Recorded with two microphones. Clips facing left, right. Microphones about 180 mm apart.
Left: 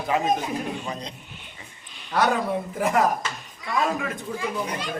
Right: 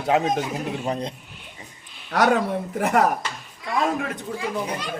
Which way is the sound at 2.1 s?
75° right (ahead or behind).